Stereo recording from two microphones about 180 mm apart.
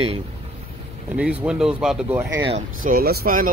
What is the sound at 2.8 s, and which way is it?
Speech, 55° right (ahead or behind).